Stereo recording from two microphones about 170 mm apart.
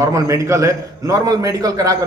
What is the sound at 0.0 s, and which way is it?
Speech, 20° right (ahead or behind).